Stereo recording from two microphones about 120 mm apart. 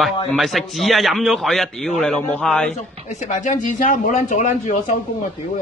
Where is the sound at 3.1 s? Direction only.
85° left.